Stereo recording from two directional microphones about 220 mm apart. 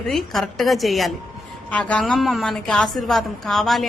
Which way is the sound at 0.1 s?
Centre (ahead or behind).